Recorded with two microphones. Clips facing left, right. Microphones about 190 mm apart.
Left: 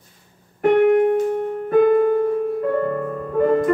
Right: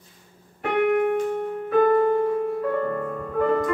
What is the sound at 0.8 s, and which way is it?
Keyboard, 35° left (ahead or behind).